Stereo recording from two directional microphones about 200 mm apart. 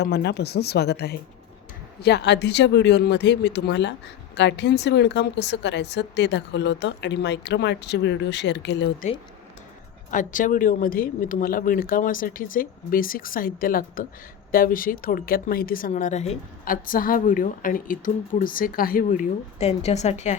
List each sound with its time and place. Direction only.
0.0 s speech: 55° left (ahead or behind)
9.0 s a woman's voice: 40° left (ahead or behind)
19.5 s a woman's voice: 30° left (ahead or behind)